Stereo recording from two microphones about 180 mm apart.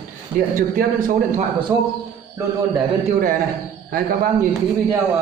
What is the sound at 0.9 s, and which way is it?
Speech, 50° right (ahead or behind).